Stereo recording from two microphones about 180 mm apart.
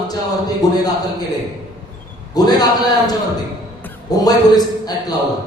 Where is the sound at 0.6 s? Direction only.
20° left (ahead or behind).